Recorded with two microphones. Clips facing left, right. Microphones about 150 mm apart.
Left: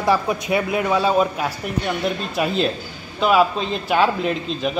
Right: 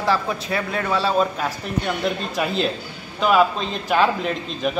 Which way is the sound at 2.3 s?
Centre (ahead or behind).